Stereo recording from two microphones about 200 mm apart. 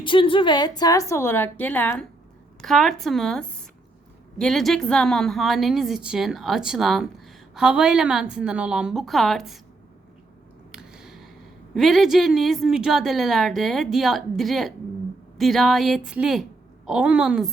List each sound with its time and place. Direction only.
0.0 s a woman's voice: 25° left (ahead or behind); by 9.6 s centre (ahead or behind)
10.7 s a sound: 5° right (ahead or behind)
11.7 s a woman's voice: centre (ahead or behind)